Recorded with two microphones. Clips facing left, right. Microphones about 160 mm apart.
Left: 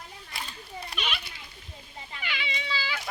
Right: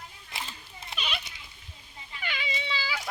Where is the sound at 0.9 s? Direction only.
20° right (ahead or behind).